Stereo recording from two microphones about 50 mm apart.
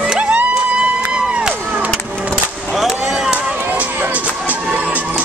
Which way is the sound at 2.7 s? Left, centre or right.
Centre.